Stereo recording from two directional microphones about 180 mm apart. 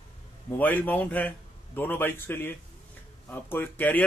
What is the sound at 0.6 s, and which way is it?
Speech, 10° left (ahead or behind).